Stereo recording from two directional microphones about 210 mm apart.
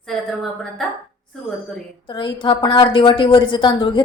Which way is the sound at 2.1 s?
20° left (ahead or behind).